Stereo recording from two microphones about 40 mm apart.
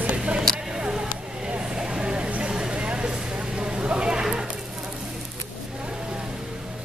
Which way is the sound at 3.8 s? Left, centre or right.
Right.